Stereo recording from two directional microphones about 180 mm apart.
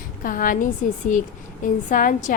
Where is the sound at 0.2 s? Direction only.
50° left (ahead or behind).